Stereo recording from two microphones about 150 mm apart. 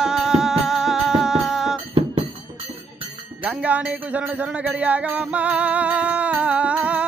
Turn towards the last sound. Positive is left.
turn(degrees=-10)  # may be behind; listen again after turning